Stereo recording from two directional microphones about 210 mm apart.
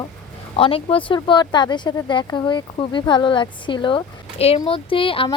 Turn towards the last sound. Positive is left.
turn(degrees=25)  # may be behind; listen again after turning